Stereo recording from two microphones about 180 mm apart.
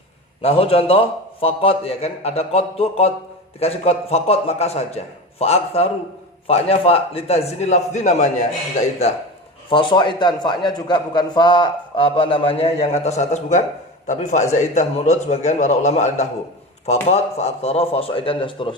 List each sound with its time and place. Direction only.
0.4 s a man's voice: 35° left (ahead or behind)
9.6 s a man's voice: 30° left (ahead or behind)